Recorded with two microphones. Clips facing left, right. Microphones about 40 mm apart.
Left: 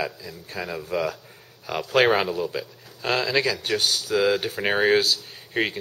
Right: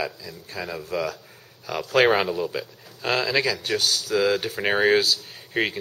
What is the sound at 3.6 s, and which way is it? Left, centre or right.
Speech, centre.